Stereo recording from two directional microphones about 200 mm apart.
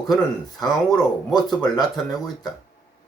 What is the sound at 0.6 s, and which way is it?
Speech, centre (ahead or behind).